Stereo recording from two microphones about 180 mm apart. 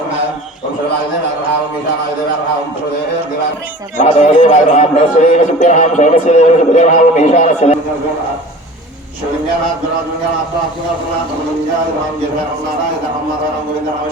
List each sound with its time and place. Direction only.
3.9 s speech: 40° left (ahead or behind)